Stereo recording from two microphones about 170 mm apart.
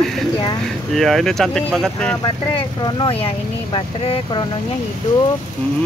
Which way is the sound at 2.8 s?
30° left (ahead or behind).